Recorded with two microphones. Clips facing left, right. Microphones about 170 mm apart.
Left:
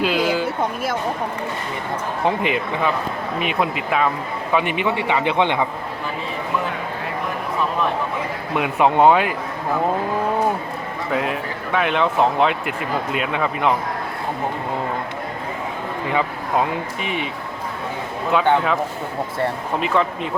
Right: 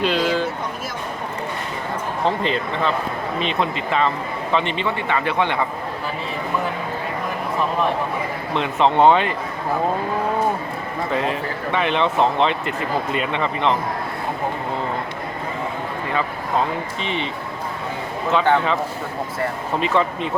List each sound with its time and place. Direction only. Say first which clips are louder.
0.0 s a sound: even; 5° left (ahead or behind)
2.2 s a man's voice: left 1 dB; 15° left (ahead or behind)
8.5 s a man's voice: left 1 dB; 10° left (ahead or behind)
11.1 s speech: left 1 dB; 5° left (ahead or behind)
17.0 s a man's voice: right 1 dB; 10° left (ahead or behind)
18.3 s speech: even; 5° left (ahead or behind)
19.8 s speech: even; centre (ahead or behind)